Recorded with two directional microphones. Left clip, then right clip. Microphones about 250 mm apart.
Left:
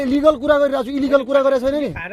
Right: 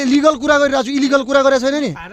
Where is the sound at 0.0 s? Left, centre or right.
Right.